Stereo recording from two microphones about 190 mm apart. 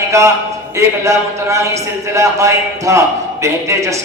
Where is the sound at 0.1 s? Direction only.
15° right (ahead or behind).